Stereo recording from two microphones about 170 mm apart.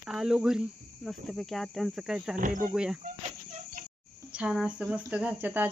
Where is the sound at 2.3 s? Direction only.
50° right (ahead or behind).